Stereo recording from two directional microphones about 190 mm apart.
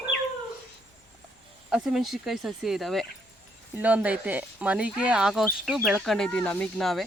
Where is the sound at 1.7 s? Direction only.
Centre (ahead or behind).